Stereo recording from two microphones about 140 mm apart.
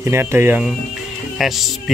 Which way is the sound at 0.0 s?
20° right (ahead or behind).